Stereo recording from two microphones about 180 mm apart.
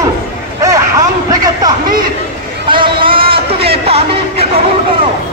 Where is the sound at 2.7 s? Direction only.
30° right (ahead or behind).